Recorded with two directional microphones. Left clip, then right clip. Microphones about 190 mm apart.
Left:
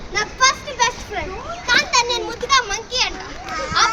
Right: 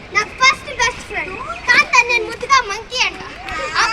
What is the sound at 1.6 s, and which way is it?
Children playing, 15° left (ahead or behind).